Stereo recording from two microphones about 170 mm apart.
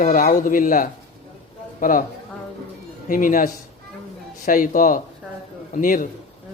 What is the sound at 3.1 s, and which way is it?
A man's voice, 50° left (ahead or behind).